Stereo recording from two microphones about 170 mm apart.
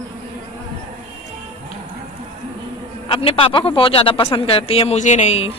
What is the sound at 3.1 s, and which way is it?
Speech, 30° left (ahead or behind).